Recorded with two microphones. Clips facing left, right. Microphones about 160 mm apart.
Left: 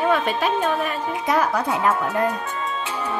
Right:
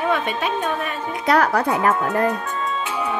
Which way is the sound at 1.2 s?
70° right (ahead or behind).